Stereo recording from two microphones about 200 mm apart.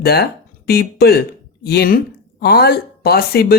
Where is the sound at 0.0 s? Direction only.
50° left (ahead or behind).